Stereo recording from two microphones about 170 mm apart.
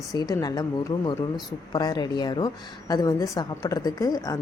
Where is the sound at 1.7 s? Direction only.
25° left (ahead or behind).